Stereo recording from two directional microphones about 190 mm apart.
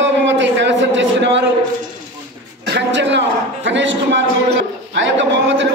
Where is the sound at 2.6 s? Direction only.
65° right (ahead or behind).